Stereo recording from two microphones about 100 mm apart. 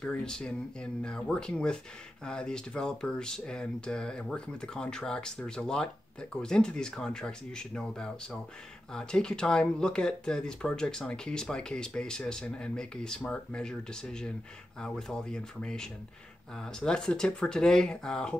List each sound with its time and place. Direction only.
0.0 s speech: 5° left (ahead or behind)